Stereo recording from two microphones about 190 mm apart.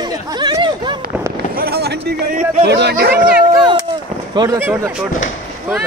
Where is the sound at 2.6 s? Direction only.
60° right (ahead or behind).